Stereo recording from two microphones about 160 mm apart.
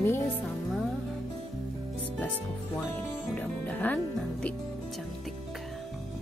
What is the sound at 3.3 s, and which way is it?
Speech, 10° left (ahead or behind).